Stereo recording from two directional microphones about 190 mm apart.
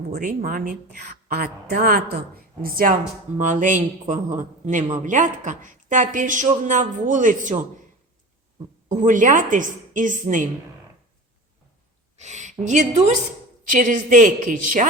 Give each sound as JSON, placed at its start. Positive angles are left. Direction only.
{"t": 0.1, "sound": "a woman's voice", "side_deg": -50}
{"t": 8.9, "sound": "a woman's voice", "side_deg": -40}
{"t": 12.1, "sound": "a woman's voice", "side_deg": -40}